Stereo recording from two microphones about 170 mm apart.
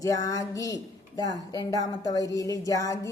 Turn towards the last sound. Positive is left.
turn(degrees=20)  # may be behind; listen again after turning